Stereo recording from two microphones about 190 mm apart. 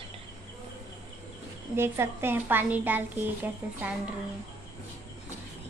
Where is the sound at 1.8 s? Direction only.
15° right (ahead or behind).